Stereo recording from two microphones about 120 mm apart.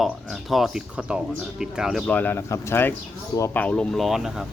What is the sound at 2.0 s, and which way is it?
Speech, 15° left (ahead or behind).